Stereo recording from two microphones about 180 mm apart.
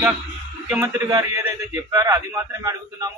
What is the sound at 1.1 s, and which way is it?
A man's voice, 15° right (ahead or behind).